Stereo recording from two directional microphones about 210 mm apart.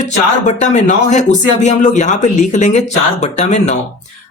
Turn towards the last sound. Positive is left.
turn(degrees=30)  # may be behind; listen again after turning